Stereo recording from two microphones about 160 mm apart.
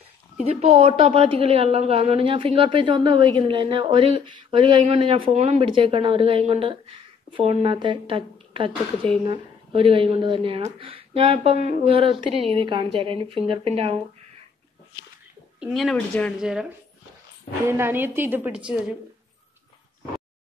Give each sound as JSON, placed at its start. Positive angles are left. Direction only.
{"t": 0.5, "sound": "a woman's voice", "side_deg": -40}
{"t": 15.6, "sound": "speech", "side_deg": 0}
{"t": 17.6, "sound": "a woman's voice", "side_deg": -15}